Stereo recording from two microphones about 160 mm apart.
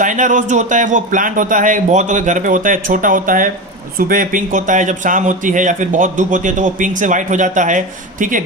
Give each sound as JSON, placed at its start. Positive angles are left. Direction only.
{"t": 0.0, "sound": "speech", "side_deg": -50}